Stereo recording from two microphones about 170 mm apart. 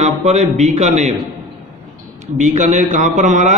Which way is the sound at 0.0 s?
40° right (ahead or behind).